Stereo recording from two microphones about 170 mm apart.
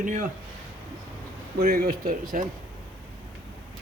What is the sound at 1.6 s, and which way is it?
Speech, 60° right (ahead or behind).